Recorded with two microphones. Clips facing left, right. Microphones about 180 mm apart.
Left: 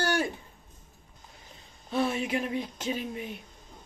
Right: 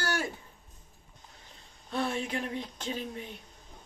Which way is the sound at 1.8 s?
5° left (ahead or behind).